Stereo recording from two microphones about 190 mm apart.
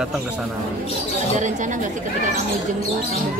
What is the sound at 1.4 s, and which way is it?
Speech, 40° right (ahead or behind).